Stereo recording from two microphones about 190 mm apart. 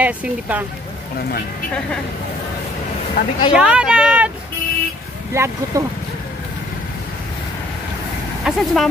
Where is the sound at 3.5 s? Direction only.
5° right (ahead or behind).